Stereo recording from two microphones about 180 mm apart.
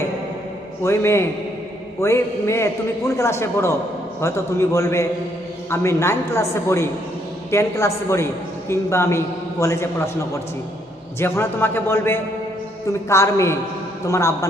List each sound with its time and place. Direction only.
0.9 s a man's voice: 15° left (ahead or behind)
11.2 s a man's voice: 10° left (ahead or behind)